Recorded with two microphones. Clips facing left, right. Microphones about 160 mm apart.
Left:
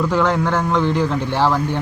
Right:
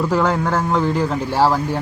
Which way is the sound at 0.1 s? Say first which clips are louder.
Even; 5° right (ahead or behind).